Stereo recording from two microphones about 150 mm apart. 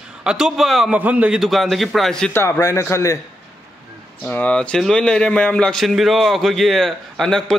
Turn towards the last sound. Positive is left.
turn(degrees=5)  # may be behind; listen again after turning